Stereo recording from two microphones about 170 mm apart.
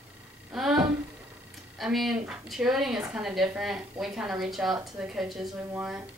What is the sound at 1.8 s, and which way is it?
A woman's voice, centre (ahead or behind).